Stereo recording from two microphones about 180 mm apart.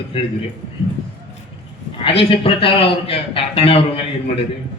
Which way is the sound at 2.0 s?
30° left (ahead or behind).